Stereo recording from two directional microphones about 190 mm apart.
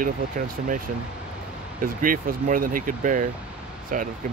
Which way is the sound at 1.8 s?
45° right (ahead or behind).